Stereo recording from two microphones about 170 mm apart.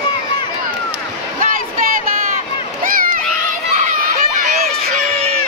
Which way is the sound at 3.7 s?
50° right (ahead or behind).